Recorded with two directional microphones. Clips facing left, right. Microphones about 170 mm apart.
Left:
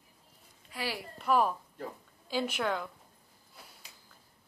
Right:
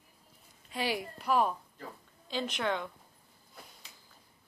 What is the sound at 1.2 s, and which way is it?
A man's voice, centre (ahead or behind).